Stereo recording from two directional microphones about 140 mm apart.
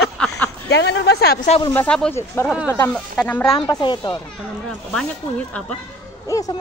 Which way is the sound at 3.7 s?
35° left (ahead or behind).